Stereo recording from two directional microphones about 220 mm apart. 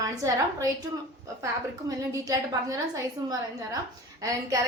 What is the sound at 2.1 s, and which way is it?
A woman's voice, 15° right (ahead or behind).